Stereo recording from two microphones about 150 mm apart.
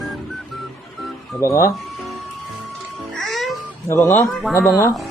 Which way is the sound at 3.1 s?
Centre (ahead or behind).